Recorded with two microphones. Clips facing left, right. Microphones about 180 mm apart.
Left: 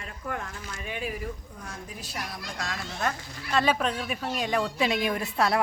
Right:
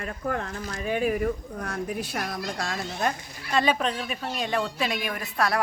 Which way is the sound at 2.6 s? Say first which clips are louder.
Even; 30° right (ahead or behind).